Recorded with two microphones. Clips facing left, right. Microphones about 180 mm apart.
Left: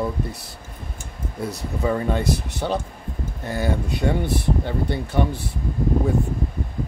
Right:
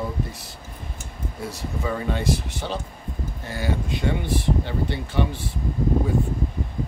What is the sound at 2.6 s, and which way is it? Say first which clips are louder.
Speech: left 5 dB; 45° left (ahead or behind).